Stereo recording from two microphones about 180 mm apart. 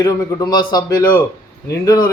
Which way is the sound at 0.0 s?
20° left (ahead or behind).